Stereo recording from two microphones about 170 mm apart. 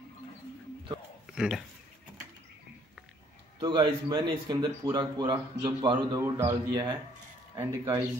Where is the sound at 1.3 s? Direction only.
5° right (ahead or behind).